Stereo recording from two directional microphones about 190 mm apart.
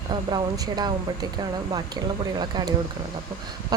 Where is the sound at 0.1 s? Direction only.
20° right (ahead or behind).